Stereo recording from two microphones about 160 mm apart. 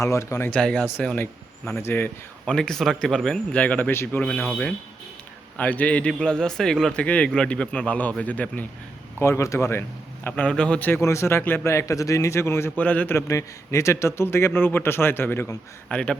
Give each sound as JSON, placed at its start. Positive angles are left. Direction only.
{"t": 0.0, "sound": "a man's voice", "side_deg": 20}
{"t": 2.5, "sound": "a man's voice", "side_deg": 5}